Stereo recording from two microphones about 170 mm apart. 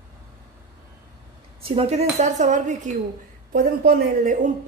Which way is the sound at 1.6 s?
35° right (ahead or behind).